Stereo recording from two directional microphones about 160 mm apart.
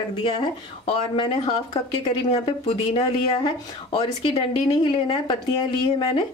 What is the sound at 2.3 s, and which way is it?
Speech, 35° left (ahead or behind).